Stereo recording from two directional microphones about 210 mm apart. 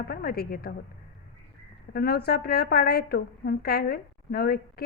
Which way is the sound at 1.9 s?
45° left (ahead or behind).